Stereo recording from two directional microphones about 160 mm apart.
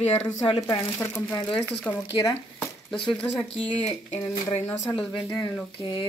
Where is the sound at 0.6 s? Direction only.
20° left (ahead or behind).